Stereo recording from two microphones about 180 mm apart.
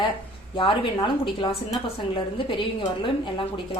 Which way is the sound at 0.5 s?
25° left (ahead or behind).